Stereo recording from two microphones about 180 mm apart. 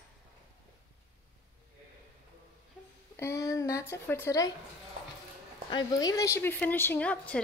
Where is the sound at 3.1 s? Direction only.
15° left (ahead or behind).